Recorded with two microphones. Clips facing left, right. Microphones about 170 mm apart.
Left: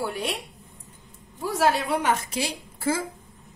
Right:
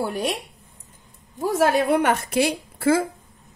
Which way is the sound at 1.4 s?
50° right (ahead or behind).